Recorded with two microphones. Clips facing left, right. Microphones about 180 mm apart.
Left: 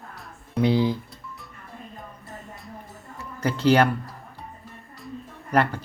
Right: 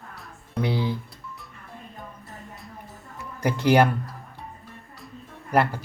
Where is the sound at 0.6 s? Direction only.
15° left (ahead or behind).